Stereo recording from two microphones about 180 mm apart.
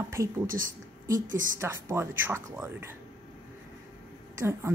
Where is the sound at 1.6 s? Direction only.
15° right (ahead or behind).